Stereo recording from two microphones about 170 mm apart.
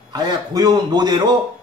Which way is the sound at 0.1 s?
25° right (ahead or behind).